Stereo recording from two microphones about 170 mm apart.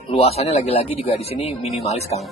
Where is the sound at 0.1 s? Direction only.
35° left (ahead or behind).